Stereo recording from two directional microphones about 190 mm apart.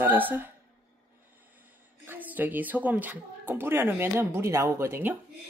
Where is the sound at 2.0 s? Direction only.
10° right (ahead or behind).